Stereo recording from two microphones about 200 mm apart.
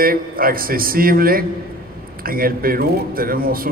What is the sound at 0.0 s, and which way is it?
A man's voice, 45° right (ahead or behind).